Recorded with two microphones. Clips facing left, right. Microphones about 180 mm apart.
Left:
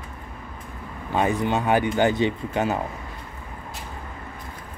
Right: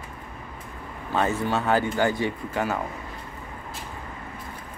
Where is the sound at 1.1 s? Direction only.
15° left (ahead or behind).